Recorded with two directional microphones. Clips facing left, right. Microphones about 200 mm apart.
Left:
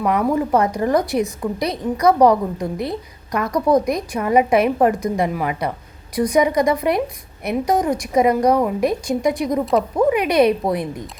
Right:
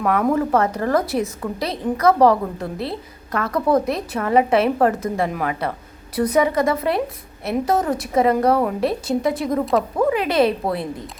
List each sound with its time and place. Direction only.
0.3 s a woman's voice: 15° left (ahead or behind)